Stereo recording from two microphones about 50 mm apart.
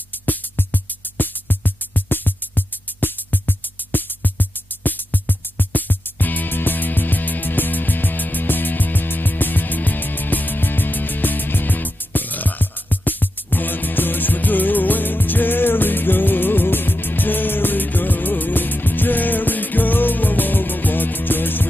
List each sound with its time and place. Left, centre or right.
0.3 s music: left